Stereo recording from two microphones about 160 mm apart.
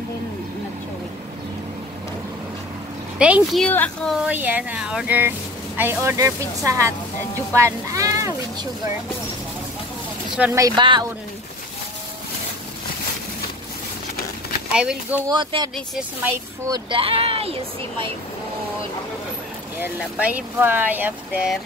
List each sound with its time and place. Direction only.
3.2 s speech: 5° right (ahead or behind)
3.6 s speech: 10° left (ahead or behind)
4.3 s speech: 10° right (ahead or behind)
10.5 s speech: 25° right (ahead or behind)
14.7 s speech: 5° right (ahead or behind)
15.2 s speech: 25° right (ahead or behind)
17.0 s speech: 35° right (ahead or behind)
19.8 s speech: 10° right (ahead or behind)